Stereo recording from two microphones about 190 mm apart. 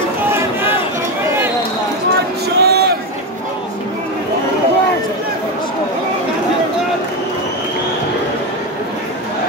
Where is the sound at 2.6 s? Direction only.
60° right (ahead or behind).